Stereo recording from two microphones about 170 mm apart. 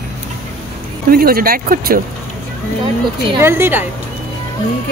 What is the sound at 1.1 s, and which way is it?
Speech, 60° right (ahead or behind).